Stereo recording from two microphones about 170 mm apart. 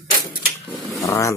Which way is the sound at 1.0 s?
20° left (ahead or behind).